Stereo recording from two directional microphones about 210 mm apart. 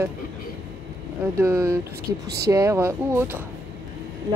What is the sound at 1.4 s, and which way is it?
Speech, 10° right (ahead or behind).